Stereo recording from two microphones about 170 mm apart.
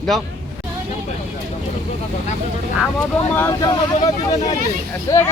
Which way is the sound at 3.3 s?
15° left (ahead or behind).